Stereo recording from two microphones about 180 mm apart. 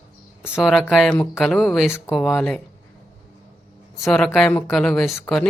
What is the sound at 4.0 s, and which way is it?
Speech, 5° left (ahead or behind).